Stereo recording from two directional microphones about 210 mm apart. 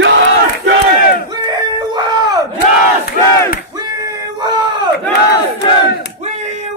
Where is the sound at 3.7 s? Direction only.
20° right (ahead or behind).